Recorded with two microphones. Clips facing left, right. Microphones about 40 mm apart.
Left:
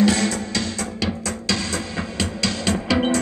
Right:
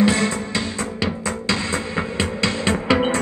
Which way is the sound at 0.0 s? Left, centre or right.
Right.